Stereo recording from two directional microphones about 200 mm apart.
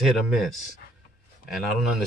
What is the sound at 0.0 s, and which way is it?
Speech, centre (ahead or behind).